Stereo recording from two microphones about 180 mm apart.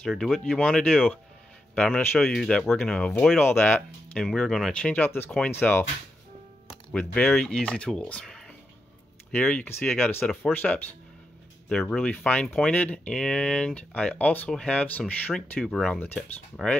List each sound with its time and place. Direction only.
0.0 s speech: centre (ahead or behind)
6.9 s speech: 5° left (ahead or behind)